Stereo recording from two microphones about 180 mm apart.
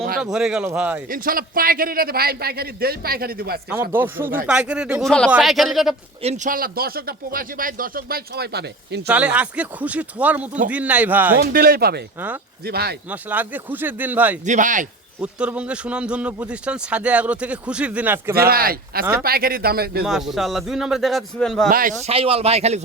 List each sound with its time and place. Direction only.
0.2 s a man's voice: 5° right (ahead or behind)
1.0 s speech: 50° right (ahead or behind)
3.8 s a man's voice: 10° right (ahead or behind)
6.2 s speech: 40° right (ahead or behind); by 9.0 s 65° right (ahead or behind)
9.0 s a man's voice: 5° right (ahead or behind)
11.3 s speech: 55° right (ahead or behind)
13.1 s a man's voice: 10° right (ahead or behind)
14.4 s speech: 45° right (ahead or behind)
15.2 s a man's voice: 5° right (ahead or behind)
18.3 s speech: 55° right (ahead or behind)
20.1 s a man's voice: centre (ahead or behind)
21.7 s speech: 55° right (ahead or behind)
22.0 s a man's voice: 30° right (ahead or behind)